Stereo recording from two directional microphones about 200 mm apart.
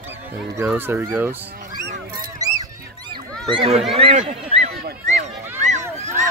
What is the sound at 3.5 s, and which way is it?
Speech, 25° right (ahead or behind).